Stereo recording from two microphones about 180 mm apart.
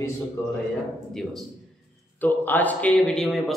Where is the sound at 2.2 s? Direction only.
10° left (ahead or behind).